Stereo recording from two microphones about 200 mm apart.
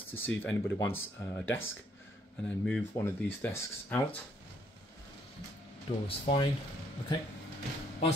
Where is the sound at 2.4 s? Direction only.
5° left (ahead or behind).